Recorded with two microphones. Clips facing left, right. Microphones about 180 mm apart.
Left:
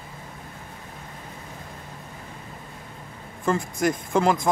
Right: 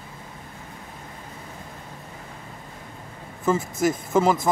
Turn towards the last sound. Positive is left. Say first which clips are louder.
# right 1 dB
turn(degrees=-5)  # may be behind; listen again after turning